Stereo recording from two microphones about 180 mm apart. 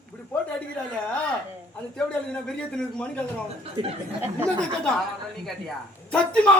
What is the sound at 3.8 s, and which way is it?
Speech, 25° right (ahead or behind).